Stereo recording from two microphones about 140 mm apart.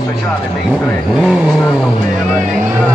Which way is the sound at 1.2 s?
5° right (ahead or behind).